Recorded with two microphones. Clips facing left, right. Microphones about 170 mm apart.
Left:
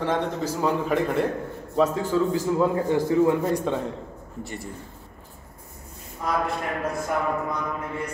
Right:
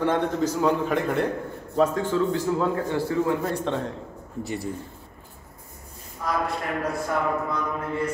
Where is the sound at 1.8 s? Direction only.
5° left (ahead or behind).